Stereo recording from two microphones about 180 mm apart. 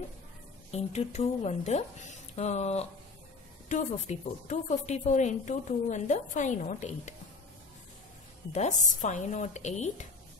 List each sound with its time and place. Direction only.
0.7 s a woman's voice: 35° left (ahead or behind)
8.5 s speech: 40° left (ahead or behind)